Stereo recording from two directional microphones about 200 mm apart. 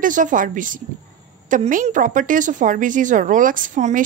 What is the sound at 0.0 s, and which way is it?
A woman's voice, 40° right (ahead or behind).